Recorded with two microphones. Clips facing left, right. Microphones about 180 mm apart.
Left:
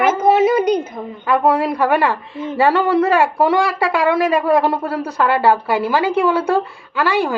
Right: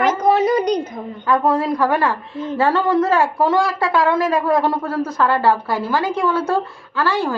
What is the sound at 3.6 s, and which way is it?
Speech, 70° left (ahead or behind).